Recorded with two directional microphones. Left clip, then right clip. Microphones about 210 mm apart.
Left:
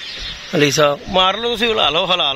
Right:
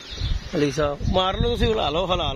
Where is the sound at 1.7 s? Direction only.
5° left (ahead or behind).